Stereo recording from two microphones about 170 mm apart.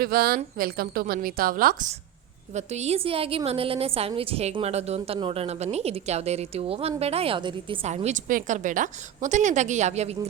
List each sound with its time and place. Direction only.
0.0 s a woman's voice: 60° right (ahead or behind)
2.5 s a woman's voice: 40° right (ahead or behind)